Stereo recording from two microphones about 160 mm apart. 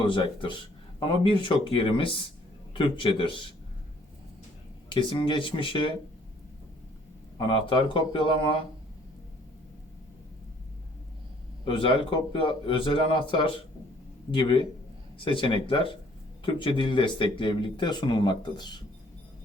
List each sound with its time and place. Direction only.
0.0 s speech: 30° left (ahead or behind)
4.9 s speech: 30° left (ahead or behind)
7.3 s speech: 30° left (ahead or behind)
11.6 s speech: 35° left (ahead or behind)